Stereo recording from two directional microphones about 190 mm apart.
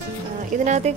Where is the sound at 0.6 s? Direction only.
35° right (ahead or behind).